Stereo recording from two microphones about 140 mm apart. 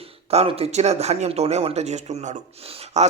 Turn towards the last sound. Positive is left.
turn(degrees=-50)  # may be behind; listen again after turning